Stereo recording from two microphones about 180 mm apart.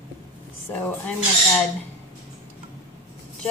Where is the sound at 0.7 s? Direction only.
10° left (ahead or behind).